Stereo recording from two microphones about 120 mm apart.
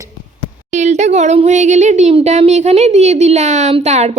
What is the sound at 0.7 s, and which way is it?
A woman's voice, 75° right (ahead or behind).